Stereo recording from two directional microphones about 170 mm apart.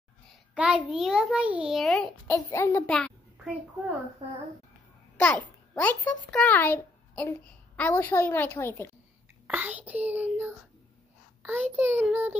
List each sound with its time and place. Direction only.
0.6 s a child's voice: 5° right (ahead or behind)
2.2 s a child's voice: 15° left (ahead or behind)
2.9 s a sound: 5° left (ahead or behind)
4.2 s a child's voice: 40° right (ahead or behind)
5.1 s a child's voice: 5° left (ahead or behind)
9.5 s whispering: 10° right (ahead or behind)
11.7 s a child's voice: 10° right (ahead or behind)